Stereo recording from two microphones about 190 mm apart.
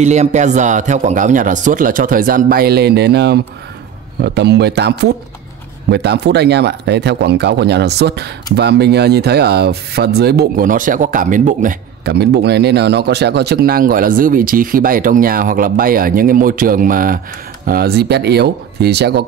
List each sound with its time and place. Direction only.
0.0 s speech: 35° right (ahead or behind)
12.1 s speech: 60° right (ahead or behind)